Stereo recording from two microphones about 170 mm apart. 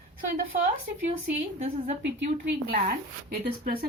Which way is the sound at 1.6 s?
40° right (ahead or behind).